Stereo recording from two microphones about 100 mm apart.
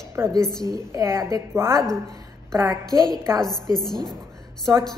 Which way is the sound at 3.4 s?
45° left (ahead or behind).